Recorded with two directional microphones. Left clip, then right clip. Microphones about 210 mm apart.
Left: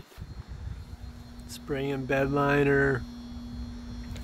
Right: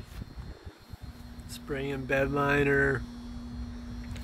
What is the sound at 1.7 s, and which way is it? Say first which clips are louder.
Speech: left 1 dB; 35° left (ahead or behind).